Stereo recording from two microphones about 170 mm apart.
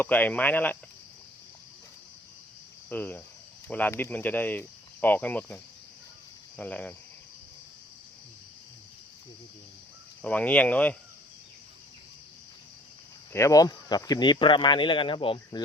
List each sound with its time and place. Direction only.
0.0 s speech: 10° left (ahead or behind)
2.9 s speech: 10° left (ahead or behind)
6.6 s speech: 10° left (ahead or behind)
10.2 s speech: 10° left (ahead or behind)
13.3 s speech: 20° left (ahead or behind)